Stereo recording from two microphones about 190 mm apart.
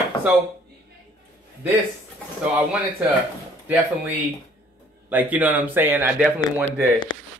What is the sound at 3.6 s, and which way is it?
Speech, 10° right (ahead or behind).